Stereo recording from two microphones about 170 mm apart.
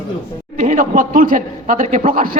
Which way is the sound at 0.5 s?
45° right (ahead or behind).